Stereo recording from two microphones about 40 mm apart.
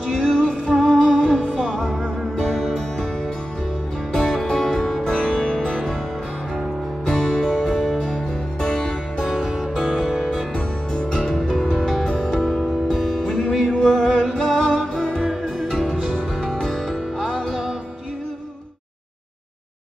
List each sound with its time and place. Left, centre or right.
0.2 s music: right
0.5 s music: centre
4.1 s music: centre
7.1 s music: centre
11.0 s music: centre
12.6 s music: centre